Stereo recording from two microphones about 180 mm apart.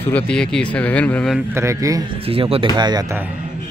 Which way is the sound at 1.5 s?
15° right (ahead or behind).